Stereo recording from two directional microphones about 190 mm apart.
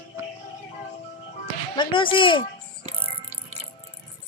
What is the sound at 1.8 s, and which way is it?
Speech, 25° left (ahead or behind).